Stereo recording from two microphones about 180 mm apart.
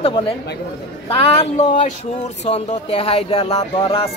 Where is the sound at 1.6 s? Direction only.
40° left (ahead or behind).